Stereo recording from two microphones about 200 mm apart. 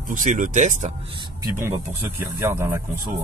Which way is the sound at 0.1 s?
40° right (ahead or behind).